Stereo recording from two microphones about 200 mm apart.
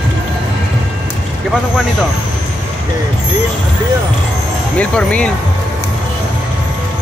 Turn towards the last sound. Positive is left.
turn(degrees=5)  # may be behind; listen again after turning